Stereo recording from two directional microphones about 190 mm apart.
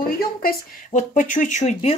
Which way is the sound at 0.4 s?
45° left (ahead or behind).